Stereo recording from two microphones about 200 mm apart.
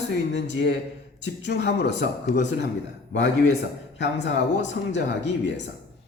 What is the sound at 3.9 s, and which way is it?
Speech, 60° left (ahead or behind).